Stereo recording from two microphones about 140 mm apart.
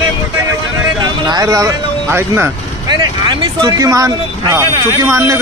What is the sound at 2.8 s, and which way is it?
Speech, 30° right (ahead or behind).